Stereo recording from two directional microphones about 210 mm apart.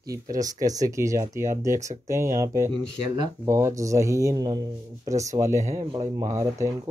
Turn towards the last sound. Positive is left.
turn(degrees=-15)  # may be behind; listen again after turning